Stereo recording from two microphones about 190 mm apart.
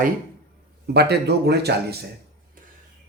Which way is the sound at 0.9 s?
60° right (ahead or behind).